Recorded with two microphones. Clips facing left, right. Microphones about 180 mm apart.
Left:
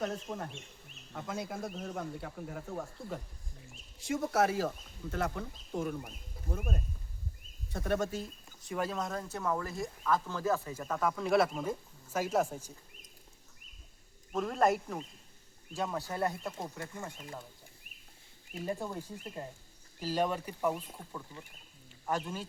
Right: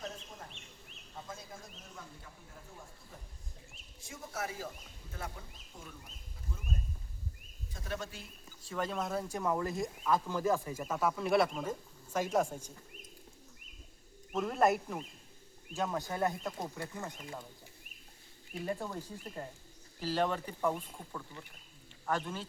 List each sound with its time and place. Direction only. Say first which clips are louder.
0.0 s speech: left 9 dB; 70° left (ahead or behind)
4.0 s speech: left 12 dB; 85° left; by 7.9 s 65° left (ahead or behind)
7.9 s speech: left 8 dB; 45° left (ahead or behind)
8.6 s speech: left 2 dB; 15° left (ahead or behind)
8.9 s speech: right 1 dB; 5° right (ahead or behind)
14.3 s speech: even; centre (ahead or behind)
18.6 s speech: left 1 dB; 10° left (ahead or behind)
20.0 s speech: left 1 dB; 15° left (ahead or behind)